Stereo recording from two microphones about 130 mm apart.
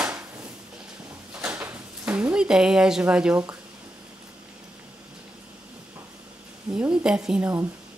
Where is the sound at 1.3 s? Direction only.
10° right (ahead or behind).